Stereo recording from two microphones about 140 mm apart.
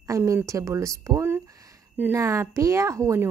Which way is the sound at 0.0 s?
20° right (ahead or behind).